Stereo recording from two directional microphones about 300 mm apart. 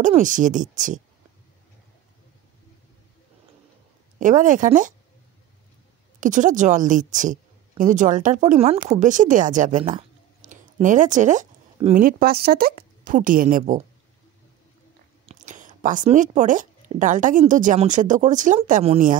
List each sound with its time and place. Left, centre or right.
0.0 s speech: right
4.2 s speech: right
6.1 s a woman's voice: right
15.2 s speech: right